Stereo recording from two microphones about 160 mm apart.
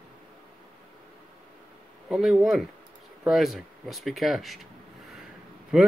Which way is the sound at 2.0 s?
Centre (ahead or behind).